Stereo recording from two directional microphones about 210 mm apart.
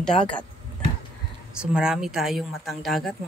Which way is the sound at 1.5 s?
5° right (ahead or behind).